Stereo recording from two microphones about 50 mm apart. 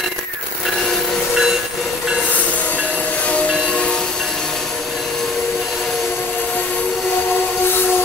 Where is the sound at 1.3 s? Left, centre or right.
Centre.